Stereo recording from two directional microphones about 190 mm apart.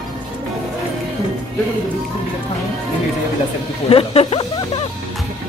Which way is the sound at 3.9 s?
30° left (ahead or behind).